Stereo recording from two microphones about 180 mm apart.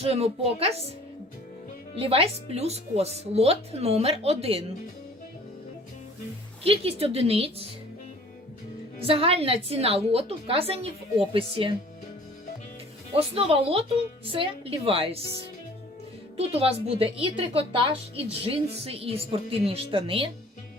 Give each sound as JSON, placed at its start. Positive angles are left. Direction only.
{"t": 0.0, "sound": "a woman's voice", "side_deg": -35}
{"t": 2.0, "sound": "a woman's voice", "side_deg": -30}
{"t": 6.7, "sound": "a woman's voice", "side_deg": -35}
{"t": 9.0, "sound": "a woman's voice", "side_deg": -30}
{"t": 13.1, "sound": "a woman's voice", "side_deg": -30}
{"t": 16.5, "sound": "a woman's voice", "side_deg": -35}